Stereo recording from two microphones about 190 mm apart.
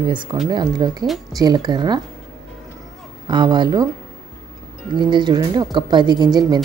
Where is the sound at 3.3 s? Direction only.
25° right (ahead or behind).